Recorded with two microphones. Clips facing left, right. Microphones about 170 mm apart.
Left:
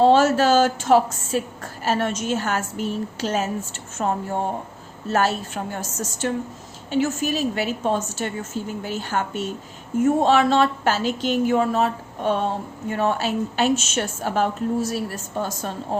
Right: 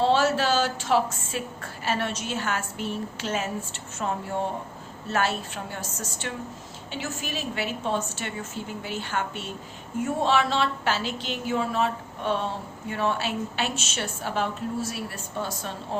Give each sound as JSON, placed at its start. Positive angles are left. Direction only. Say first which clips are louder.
{"t": 0.0, "sound": "a woman's voice", "louder": "left 6 dB", "side_deg": 45}